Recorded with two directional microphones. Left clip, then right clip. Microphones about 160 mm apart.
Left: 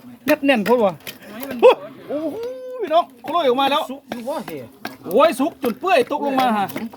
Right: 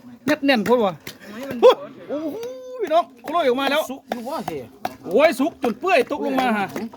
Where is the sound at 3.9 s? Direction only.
90° right.